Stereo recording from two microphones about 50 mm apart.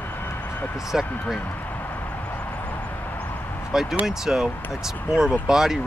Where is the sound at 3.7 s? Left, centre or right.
Centre.